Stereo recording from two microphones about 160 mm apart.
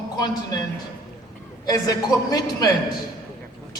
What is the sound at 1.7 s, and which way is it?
A man's voice, 20° left (ahead or behind).